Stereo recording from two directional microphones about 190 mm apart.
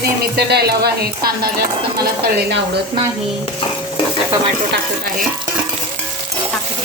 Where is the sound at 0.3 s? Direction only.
55° right (ahead or behind).